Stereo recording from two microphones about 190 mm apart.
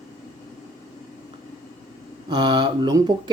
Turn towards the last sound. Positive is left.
turn(degrees=-20)  # may be behind; listen again after turning